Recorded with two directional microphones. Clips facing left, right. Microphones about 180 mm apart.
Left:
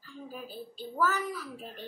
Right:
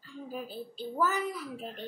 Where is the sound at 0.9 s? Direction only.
15° right (ahead or behind).